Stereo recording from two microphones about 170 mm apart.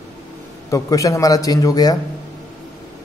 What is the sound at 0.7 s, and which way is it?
A man's voice, 20° left (ahead or behind).